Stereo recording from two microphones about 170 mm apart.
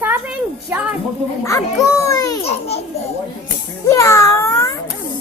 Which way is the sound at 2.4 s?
35° left (ahead or behind).